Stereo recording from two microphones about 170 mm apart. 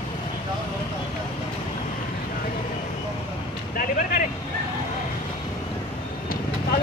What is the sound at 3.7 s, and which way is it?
Vehicle, 50° left (ahead or behind).